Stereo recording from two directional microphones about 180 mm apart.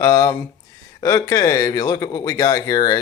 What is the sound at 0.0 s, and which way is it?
Speech, 20° left (ahead or behind).